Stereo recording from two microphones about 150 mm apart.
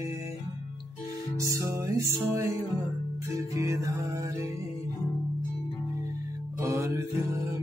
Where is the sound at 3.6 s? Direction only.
20° right (ahead or behind).